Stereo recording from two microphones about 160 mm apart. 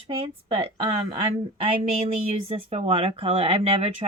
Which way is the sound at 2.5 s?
40° right (ahead or behind).